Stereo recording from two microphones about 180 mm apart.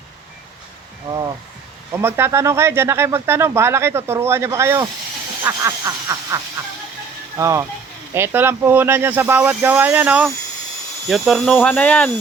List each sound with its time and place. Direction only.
1.1 s speech: 15° right (ahead or behind)
5.5 s a sound: 15° right (ahead or behind)
7.3 s speech: 15° right (ahead or behind)
11.1 s speech: centre (ahead or behind)